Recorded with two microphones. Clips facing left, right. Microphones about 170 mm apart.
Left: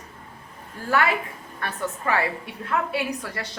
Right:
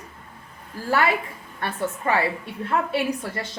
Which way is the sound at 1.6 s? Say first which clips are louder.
Right 2 dB; 30° right (ahead or behind).